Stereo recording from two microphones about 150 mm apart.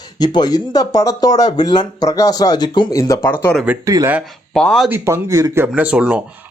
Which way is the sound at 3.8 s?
20° right (ahead or behind).